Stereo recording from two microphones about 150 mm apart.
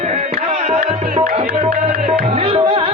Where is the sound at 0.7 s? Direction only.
40° right (ahead or behind).